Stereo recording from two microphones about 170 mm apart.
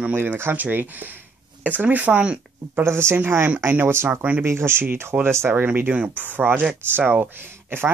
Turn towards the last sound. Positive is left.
turn(degrees=-15)  # may be behind; listen again after turning